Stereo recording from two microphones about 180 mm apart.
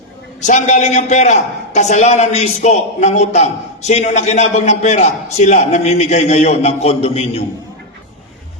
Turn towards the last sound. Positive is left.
turn(degrees=35)  # may be behind; listen again after turning